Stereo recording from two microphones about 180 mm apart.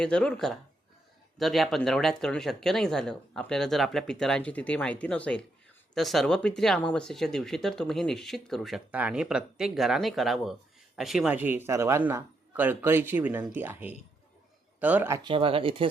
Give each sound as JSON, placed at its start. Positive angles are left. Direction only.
{"t": 0.0, "sound": "speech", "side_deg": 5}
{"t": 15.2, "sound": "speech", "side_deg": -30}